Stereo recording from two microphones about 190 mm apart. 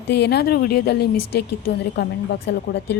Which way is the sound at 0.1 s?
65° left (ahead or behind).